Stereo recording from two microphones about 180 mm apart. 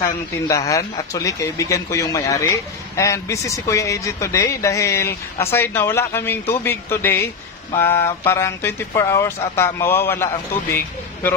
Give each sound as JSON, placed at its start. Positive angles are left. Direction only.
{"t": 0.5, "sound": "speech", "side_deg": 15}